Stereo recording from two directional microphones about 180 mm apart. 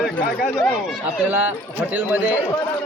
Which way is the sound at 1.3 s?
10° right (ahead or behind).